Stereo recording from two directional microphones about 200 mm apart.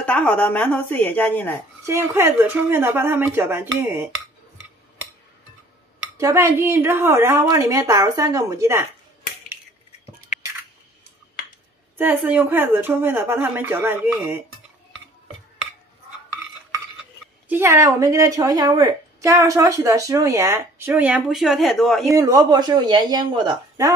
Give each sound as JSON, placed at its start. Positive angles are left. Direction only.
{"t": 0.0, "sound": "speech", "side_deg": 5}
{"t": 1.9, "sound": "a woman's voice", "side_deg": -15}
{"t": 6.1, "sound": "a woman's voice", "side_deg": -15}
{"t": 12.0, "sound": "a woman's voice", "side_deg": -10}
{"t": 17.5, "sound": "a woman's voice", "side_deg": -15}
{"t": 22.1, "sound": "speech", "side_deg": -15}